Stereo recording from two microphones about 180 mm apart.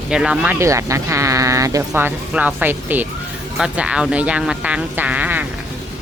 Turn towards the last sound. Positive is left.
turn(degrees=-10)  # may be behind; listen again after turning